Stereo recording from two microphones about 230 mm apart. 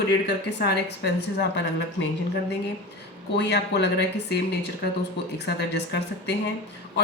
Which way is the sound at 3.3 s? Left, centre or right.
Left.